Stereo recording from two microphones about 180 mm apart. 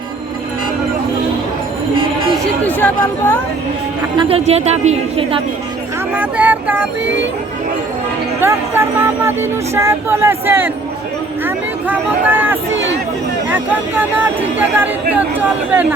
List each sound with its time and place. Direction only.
2.6 s speech: 10° left (ahead or behind)
4.2 s a woman's voice: 35° right (ahead or behind)
6.1 s speech: 10° right (ahead or behind)
8.4 s speech: 15° right (ahead or behind)